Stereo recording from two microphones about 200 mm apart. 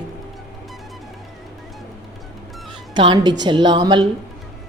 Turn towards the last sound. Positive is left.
turn(degrees=-20)  # may be behind; listen again after turning